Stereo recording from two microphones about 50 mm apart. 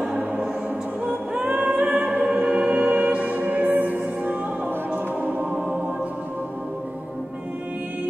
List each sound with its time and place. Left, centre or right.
0.0 s music: centre; by 4.4 s right
5.2 s music: centre